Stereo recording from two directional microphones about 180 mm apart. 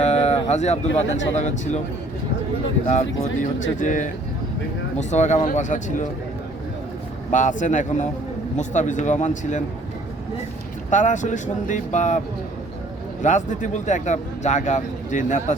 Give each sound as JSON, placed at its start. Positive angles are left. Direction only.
{"t": 0.0, "sound": "speech", "side_deg": 35}
{"t": 2.8, "sound": "speech", "side_deg": 40}
{"t": 7.3, "sound": "speech", "side_deg": 45}
{"t": 10.8, "sound": "speech", "side_deg": 45}
{"t": 13.2, "sound": "speech", "side_deg": 45}